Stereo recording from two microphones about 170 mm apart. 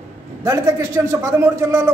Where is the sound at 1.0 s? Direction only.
15° right (ahead or behind).